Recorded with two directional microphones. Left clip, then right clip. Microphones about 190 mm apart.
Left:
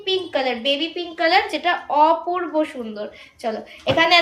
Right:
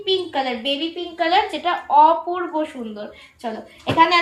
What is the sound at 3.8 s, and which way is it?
Speech, 65° left (ahead or behind).